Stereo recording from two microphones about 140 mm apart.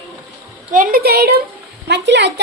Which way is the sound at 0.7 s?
80° right.